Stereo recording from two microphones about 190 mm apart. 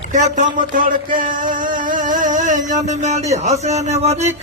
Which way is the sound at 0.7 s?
45° right (ahead or behind).